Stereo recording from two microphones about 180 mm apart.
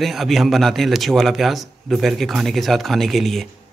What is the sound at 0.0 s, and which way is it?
A man's voice, centre (ahead or behind).